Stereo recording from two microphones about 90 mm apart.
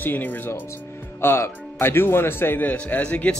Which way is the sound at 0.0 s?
20° left (ahead or behind).